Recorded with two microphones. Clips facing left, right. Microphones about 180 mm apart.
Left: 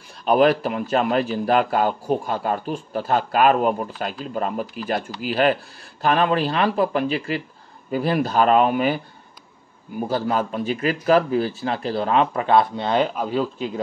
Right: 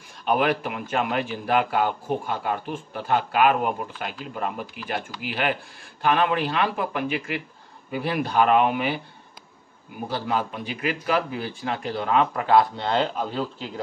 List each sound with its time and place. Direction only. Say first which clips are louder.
0.2 s a man's voice: left 6 dB; 35° left (ahead or behind)
10.0 s a man's voice: left 4 dB; 45° left (ahead or behind); by 13.7 s 10° left (ahead or behind)